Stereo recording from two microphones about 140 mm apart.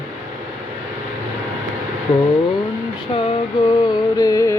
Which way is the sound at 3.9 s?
25° left (ahead or behind).